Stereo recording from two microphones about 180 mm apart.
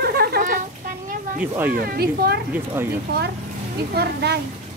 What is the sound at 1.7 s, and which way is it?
Speech, 55° right (ahead or behind).